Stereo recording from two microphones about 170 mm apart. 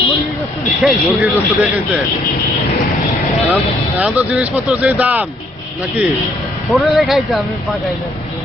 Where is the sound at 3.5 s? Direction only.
10° right (ahead or behind).